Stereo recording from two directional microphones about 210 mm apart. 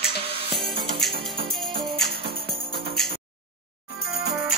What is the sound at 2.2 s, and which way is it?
Music, 25° right (ahead or behind).